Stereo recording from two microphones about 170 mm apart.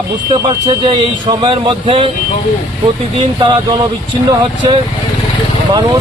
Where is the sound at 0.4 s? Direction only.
30° right (ahead or behind).